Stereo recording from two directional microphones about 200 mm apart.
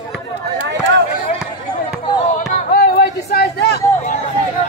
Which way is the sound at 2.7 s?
50° left (ahead or behind).